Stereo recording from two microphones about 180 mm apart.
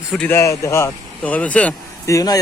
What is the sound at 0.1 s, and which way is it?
Speech, 10° left (ahead or behind).